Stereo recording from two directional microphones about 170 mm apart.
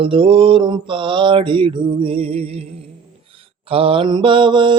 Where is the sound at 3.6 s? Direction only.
35° right (ahead or behind).